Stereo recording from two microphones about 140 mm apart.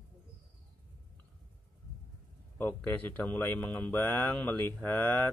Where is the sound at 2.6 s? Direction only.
10° left (ahead or behind).